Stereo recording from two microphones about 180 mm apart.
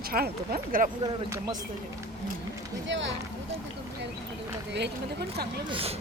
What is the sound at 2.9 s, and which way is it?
Speech, 90° right.